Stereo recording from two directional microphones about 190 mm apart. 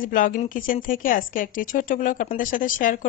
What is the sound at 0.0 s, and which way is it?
A woman's voice, 45° left (ahead or behind).